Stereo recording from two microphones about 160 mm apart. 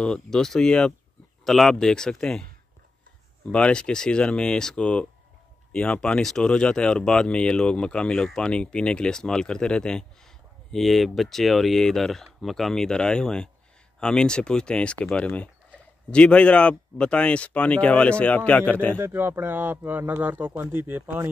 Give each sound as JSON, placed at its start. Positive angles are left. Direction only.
{"t": 0.0, "sound": "speech", "side_deg": 5}
{"t": 3.4, "sound": "speech", "side_deg": 5}
{"t": 18.9, "sound": "speech", "side_deg": -15}